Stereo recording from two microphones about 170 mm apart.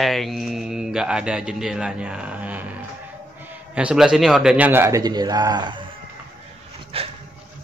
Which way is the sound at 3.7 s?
5° right (ahead or behind).